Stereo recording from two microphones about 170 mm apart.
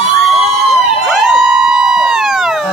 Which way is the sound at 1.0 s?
5° right (ahead or behind).